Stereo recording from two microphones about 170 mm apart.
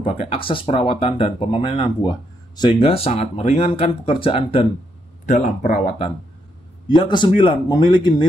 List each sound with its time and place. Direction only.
0.0 s a man's voice: 35° left (ahead or behind)